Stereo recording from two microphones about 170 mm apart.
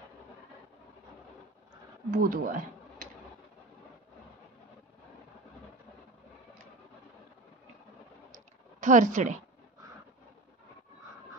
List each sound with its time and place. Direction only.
2.0 s speech: 55° right (ahead or behind)
8.8 s speech: 45° right (ahead or behind)